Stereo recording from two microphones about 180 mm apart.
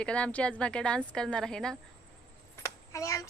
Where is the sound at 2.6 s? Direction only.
15° left (ahead or behind).